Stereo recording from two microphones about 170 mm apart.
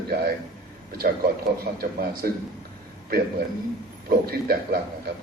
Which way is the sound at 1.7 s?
55° right (ahead or behind).